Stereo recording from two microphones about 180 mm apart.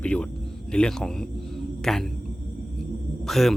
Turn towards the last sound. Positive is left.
turn(degrees=0)  # may be behind; listen again after turning